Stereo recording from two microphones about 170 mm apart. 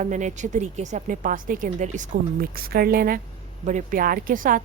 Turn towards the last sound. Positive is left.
turn(degrees=-50)  # may be behind; listen again after turning